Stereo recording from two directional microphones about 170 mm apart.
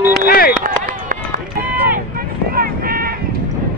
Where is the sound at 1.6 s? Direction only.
10° right (ahead or behind).